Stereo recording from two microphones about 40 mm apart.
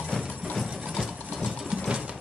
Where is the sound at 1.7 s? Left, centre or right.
Centre.